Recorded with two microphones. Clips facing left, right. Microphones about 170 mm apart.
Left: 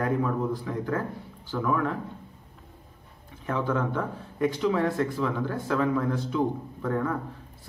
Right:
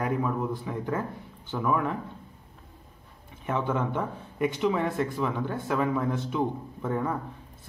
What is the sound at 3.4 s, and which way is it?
Speech, 20° right (ahead or behind).